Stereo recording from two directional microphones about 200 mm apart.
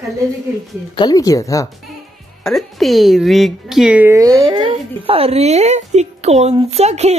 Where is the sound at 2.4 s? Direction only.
Centre (ahead or behind).